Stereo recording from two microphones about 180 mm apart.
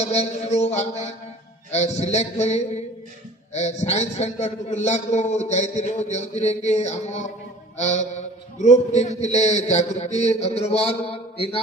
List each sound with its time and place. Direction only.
0.0 s a man's voice: 40° left (ahead or behind)